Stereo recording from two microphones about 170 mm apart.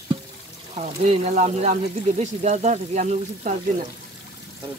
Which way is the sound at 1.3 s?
45° right (ahead or behind).